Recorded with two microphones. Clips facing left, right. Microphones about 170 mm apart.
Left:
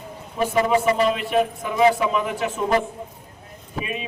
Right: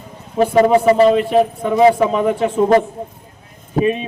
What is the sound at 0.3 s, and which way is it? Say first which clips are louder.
A man's voice: right 8 dB; 40° right (ahead or behind).